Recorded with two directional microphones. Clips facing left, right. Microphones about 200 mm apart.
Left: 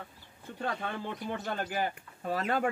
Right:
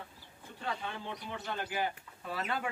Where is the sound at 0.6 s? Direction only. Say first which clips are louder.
Left 4 dB; 50° left (ahead or behind).